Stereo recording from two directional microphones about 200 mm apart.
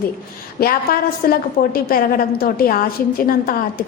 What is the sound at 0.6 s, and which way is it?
A woman's voice, 45° left (ahead or behind).